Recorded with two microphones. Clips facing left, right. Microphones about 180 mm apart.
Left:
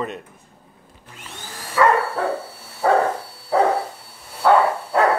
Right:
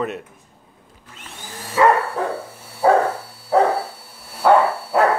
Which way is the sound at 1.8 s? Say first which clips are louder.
Right 2 dB; 20° right (ahead or behind).